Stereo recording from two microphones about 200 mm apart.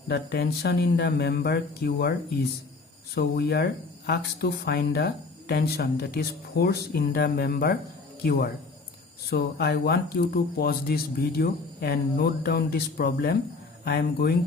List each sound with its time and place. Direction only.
0.1 s speech: 55° left (ahead or behind)
3.2 s speech: 55° left (ahead or behind)